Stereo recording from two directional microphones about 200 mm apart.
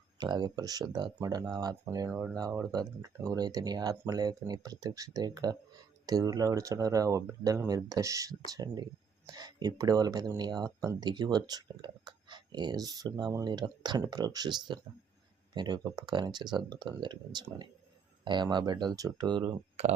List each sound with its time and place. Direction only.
0.2 s speech: 20° right (ahead or behind)